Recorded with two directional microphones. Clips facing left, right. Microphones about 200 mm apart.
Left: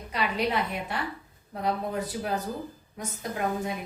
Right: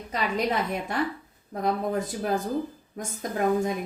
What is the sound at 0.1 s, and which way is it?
A woman's voice, 45° right (ahead or behind).